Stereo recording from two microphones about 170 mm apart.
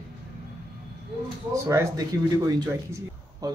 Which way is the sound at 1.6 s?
20° right (ahead or behind).